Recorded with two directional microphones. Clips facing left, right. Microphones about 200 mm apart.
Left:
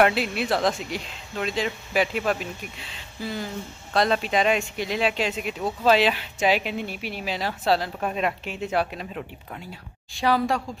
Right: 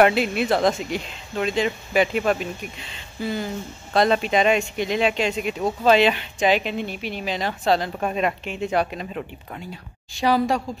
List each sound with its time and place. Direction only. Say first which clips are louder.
0.0 s a woman's voice: right 3 dB; centre (ahead or behind)